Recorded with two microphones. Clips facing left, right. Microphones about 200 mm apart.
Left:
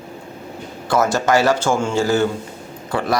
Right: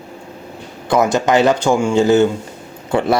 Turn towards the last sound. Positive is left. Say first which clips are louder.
# right 5 dB
turn(degrees=-25)  # may be behind; listen again after turning